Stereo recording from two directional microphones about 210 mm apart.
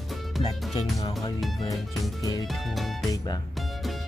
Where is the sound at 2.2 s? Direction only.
20° left (ahead or behind).